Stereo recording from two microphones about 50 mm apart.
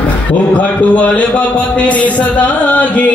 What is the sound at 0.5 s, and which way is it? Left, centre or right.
Music, left.